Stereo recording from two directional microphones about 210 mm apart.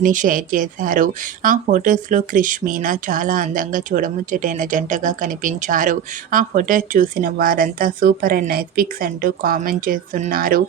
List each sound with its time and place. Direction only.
0.0 s speech: 40° right (ahead or behind)